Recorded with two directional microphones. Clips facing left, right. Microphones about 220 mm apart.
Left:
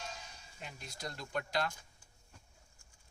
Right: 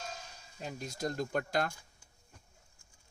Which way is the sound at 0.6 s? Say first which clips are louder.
Right 9 dB; 40° right (ahead or behind).